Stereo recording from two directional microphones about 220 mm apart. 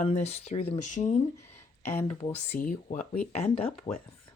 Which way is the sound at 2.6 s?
35° left (ahead or behind).